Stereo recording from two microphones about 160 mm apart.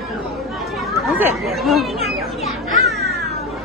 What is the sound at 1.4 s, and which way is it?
Children playing, centre (ahead or behind).